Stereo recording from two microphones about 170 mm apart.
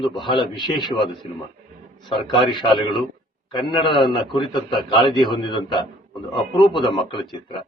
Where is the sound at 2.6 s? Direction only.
30° left (ahead or behind).